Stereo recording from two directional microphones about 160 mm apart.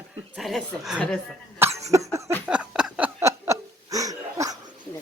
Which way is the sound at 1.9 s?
20° right (ahead or behind).